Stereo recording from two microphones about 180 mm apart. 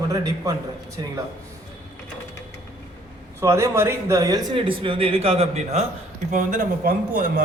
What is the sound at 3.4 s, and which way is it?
Speech, 15° right (ahead or behind).